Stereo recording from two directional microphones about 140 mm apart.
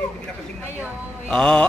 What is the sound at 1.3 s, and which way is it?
Speech, 5° left (ahead or behind).